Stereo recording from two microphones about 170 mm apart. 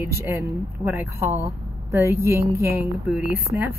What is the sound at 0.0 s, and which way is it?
Speech, 15° right (ahead or behind).